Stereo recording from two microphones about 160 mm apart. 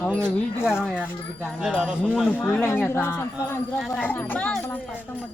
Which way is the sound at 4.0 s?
10° left (ahead or behind).